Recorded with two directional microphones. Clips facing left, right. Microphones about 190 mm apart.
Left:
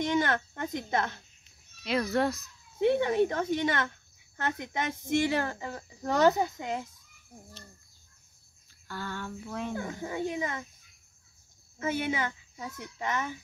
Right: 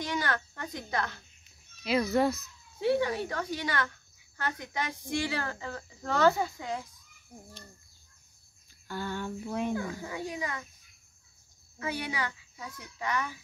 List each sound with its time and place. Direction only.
0.0 s speech: 25° left (ahead or behind)
1.8 s speech: centre (ahead or behind)
2.8 s speech: 20° left (ahead or behind)
8.8 s a sound: 15° right (ahead or behind)
9.8 s speech: 25° left (ahead or behind)
11.8 s speech: 25° left (ahead or behind)